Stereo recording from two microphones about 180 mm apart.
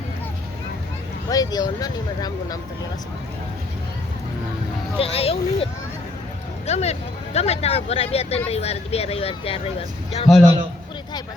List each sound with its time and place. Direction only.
1.3 s speech: 20° left (ahead or behind)
4.9 s speech: 30° left (ahead or behind)
6.7 s speech: 35° left (ahead or behind)
10.3 s a man's voice: centre (ahead or behind)